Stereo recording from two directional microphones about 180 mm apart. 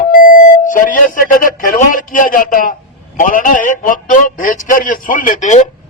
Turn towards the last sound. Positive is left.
turn(degrees=45)  # may be behind; listen again after turning